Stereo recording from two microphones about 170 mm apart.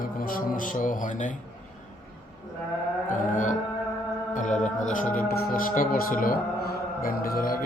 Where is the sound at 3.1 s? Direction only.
50° left (ahead or behind).